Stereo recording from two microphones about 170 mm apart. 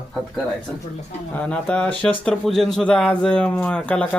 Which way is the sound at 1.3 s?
10° left (ahead or behind).